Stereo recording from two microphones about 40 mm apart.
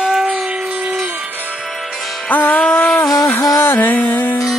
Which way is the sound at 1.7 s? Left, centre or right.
Centre.